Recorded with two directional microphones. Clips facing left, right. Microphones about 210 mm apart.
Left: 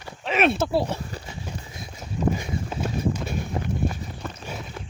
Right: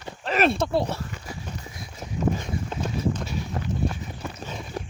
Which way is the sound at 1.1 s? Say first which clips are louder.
Left 1 dB; 25° left (ahead or behind).